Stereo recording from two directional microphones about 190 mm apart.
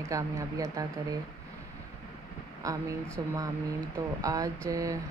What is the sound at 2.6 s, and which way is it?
Speech, 15° right (ahead or behind).